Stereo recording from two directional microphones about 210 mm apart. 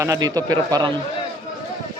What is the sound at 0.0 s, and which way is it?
Speech, 15° right (ahead or behind).